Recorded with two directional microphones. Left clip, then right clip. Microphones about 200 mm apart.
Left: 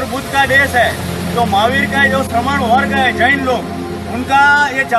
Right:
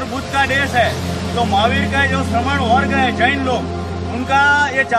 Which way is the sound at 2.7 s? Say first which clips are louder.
Left 3 dB; 25° right (ahead or behind).